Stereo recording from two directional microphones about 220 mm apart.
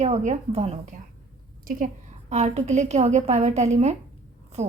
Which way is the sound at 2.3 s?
30° right (ahead or behind).